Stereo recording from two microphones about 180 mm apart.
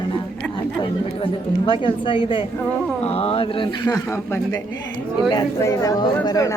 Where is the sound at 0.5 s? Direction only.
25° left (ahead or behind).